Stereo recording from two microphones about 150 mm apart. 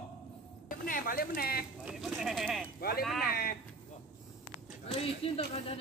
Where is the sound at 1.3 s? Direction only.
90° left.